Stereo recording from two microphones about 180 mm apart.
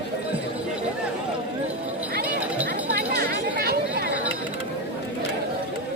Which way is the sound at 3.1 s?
65° right (ahead or behind).